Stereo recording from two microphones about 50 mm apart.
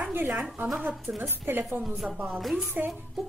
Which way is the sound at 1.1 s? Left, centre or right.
Right.